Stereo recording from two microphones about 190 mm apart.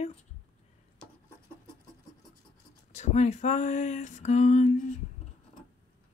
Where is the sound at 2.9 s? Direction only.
35° left (ahead or behind).